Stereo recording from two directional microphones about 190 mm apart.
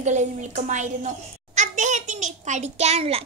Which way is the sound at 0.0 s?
40° right (ahead or behind).